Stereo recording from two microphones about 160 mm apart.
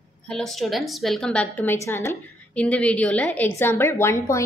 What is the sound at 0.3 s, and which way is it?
A woman's voice, centre (ahead or behind).